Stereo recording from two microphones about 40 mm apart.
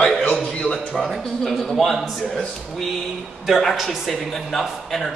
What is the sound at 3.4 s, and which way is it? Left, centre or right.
Speech, centre.